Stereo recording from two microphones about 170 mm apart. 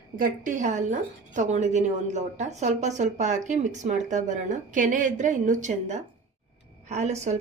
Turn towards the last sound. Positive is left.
turn(degrees=-40)  # may be behind; listen again after turning